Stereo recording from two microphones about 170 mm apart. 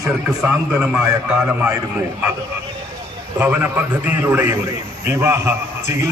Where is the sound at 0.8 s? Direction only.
5° right (ahead or behind).